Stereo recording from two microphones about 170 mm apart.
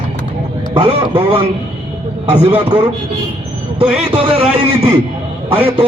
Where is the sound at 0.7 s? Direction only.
30° right (ahead or behind).